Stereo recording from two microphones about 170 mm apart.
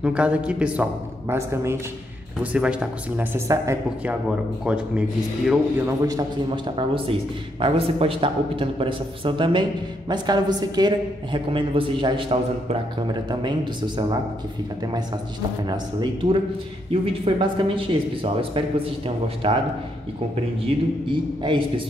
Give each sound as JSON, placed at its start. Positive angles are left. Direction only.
{"t": 0.0, "sound": "a man's voice", "side_deg": -5}
{"t": 15.7, "sound": "a man's voice", "side_deg": -25}
{"t": 20.6, "sound": "a man's voice", "side_deg": -30}